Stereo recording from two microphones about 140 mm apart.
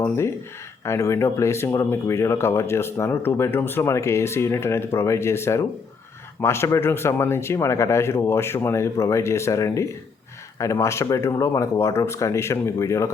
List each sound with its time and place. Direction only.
0.9 s speech: 20° left (ahead or behind)